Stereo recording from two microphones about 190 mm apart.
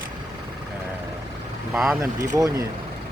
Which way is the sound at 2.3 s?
15° right (ahead or behind).